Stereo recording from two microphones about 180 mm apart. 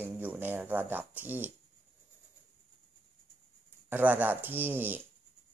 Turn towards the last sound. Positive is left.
turn(degrees=-10)  # may be behind; listen again after turning